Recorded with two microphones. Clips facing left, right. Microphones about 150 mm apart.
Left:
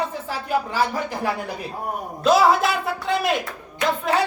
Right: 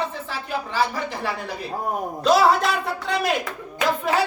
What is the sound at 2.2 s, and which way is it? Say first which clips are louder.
Speech: left 1 dB; centre (ahead or behind).